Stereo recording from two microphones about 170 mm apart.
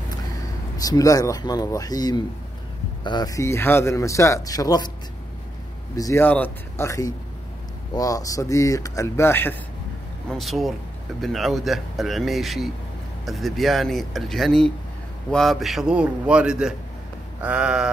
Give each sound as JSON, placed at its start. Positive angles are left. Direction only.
{"t": 0.7, "sound": "speech", "side_deg": 20}
{"t": 5.9, "sound": "speech", "side_deg": 15}
{"t": 10.3, "sound": "speech", "side_deg": 0}
{"t": 17.4, "sound": "a sound", "side_deg": -5}